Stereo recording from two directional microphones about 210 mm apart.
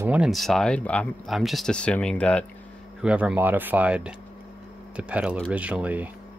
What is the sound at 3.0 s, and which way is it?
Speech, 5° right (ahead or behind).